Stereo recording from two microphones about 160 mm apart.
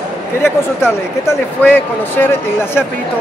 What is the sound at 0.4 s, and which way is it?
Speech, 15° left (ahead or behind).